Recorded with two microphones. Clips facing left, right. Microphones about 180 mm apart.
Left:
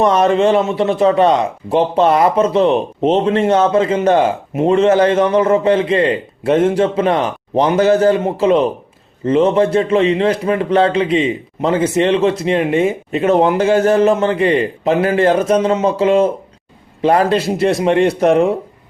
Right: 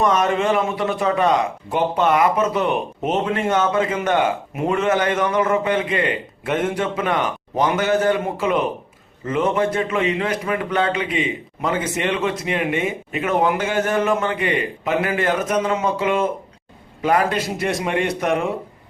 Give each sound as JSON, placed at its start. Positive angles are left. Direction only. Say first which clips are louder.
{"t": 0.0, "sound": "speech", "louder": "left 6 dB", "side_deg": 30}